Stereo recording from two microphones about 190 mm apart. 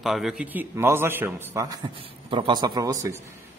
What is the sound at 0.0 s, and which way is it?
A man's voice, centre (ahead or behind).